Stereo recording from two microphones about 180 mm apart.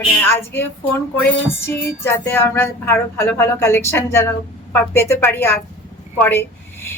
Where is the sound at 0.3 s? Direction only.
10° left (ahead or behind).